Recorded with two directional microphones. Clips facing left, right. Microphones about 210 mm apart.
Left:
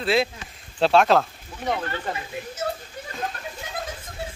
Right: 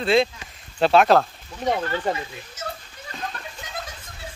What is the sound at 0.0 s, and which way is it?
Speech, 5° left (ahead or behind).